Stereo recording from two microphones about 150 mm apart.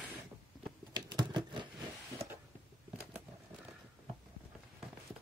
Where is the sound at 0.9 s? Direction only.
30° right (ahead or behind).